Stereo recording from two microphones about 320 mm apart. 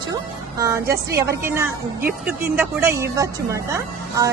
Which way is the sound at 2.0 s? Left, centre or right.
Right.